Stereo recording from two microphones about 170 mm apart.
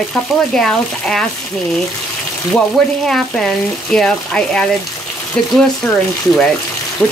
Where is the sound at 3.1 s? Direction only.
Centre (ahead or behind).